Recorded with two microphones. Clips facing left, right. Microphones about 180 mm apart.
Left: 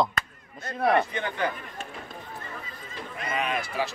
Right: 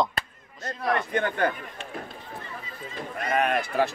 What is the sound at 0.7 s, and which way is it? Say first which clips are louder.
Speech: left 4 dB; 55° left (ahead or behind).